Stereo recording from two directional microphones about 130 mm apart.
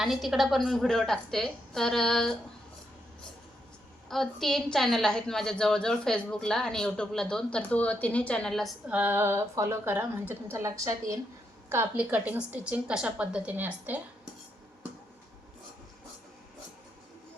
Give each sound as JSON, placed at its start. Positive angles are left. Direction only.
{"t": 0.0, "sound": "a woman's voice", "side_deg": 0}
{"t": 4.1, "sound": "a woman's voice", "side_deg": 0}
{"t": 8.9, "sound": "a woman's voice", "side_deg": -15}